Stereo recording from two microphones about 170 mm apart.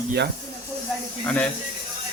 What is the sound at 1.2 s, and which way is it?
Speech, 5° left (ahead or behind).